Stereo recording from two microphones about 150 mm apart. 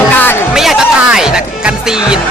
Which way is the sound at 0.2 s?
15° left (ahead or behind).